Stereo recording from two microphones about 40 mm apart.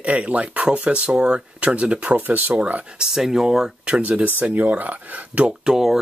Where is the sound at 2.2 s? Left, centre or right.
Right.